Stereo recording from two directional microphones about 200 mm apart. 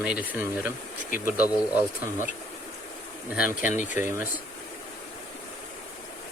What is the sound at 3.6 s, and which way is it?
Speech, 40° left (ahead or behind).